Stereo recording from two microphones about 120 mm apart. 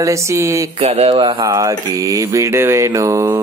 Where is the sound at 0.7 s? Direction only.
55° right (ahead or behind).